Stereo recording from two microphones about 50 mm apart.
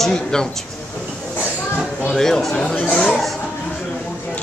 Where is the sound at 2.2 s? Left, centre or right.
Centre.